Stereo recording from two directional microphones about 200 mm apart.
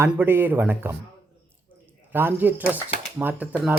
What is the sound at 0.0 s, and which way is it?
Speech, 10° right (ahead or behind).